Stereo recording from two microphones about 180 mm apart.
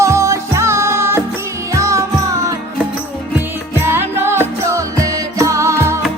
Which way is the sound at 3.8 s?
10° right (ahead or behind).